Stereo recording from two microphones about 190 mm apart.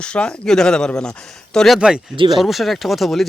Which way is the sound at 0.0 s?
5° left (ahead or behind).